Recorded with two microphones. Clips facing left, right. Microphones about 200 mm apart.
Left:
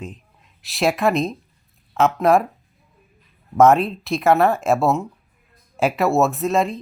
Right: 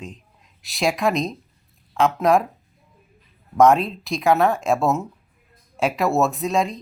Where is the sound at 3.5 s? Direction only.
5° left (ahead or behind).